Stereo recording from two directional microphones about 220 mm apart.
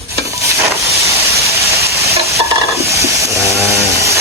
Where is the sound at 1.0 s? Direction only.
15° right (ahead or behind).